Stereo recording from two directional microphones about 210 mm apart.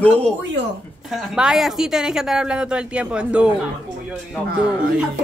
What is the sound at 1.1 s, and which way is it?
A woman's voice, 5° right (ahead or behind).